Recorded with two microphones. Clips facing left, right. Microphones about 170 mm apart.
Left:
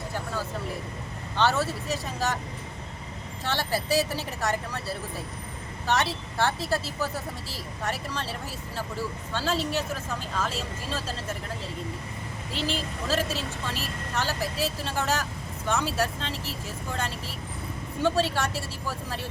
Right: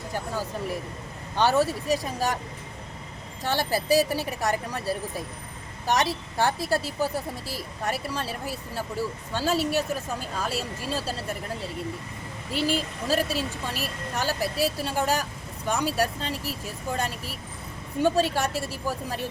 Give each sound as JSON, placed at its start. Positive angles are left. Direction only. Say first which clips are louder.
{"t": 1.4, "sound": "speech", "louder": "right 3 dB", "side_deg": -15}
{"t": 3.4, "sound": "speech", "louder": "right 3 dB", "side_deg": -15}
{"t": 12.5, "sound": "speech", "louder": "right 4 dB", "side_deg": -10}